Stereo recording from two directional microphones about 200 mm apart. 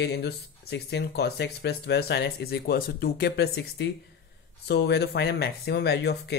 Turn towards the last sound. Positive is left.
turn(degrees=55)  # may be behind; listen again after turning